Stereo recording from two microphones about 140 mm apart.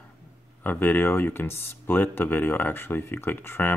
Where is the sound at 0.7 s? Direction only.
15° left (ahead or behind).